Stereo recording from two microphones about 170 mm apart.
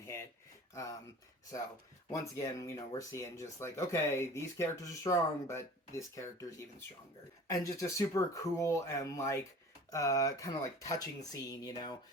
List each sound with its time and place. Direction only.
0.7 s speech: 20° left (ahead or behind)
2.0 s speech: 20° left (ahead or behind)